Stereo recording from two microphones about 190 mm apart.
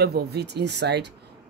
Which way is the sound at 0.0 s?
60° right (ahead or behind).